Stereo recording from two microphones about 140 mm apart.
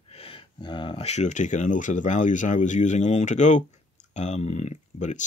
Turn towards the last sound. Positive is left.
turn(degrees=55)  # may be behind; listen again after turning